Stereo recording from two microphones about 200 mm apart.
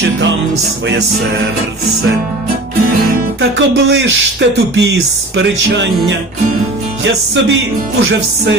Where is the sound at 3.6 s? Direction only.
65° right (ahead or behind).